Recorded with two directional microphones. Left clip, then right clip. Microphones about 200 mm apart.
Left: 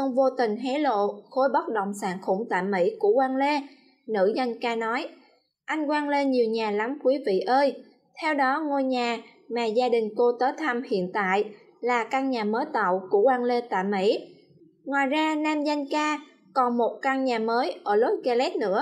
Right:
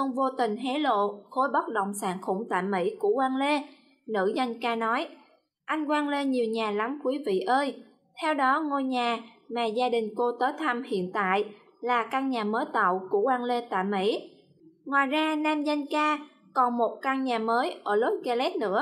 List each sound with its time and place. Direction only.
0.2 s a woman's voice: 5° left (ahead or behind)